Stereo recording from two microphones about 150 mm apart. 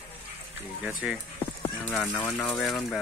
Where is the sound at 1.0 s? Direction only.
5° right (ahead or behind).